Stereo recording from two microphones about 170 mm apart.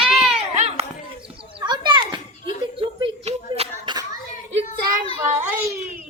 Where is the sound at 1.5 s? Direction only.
25° right (ahead or behind).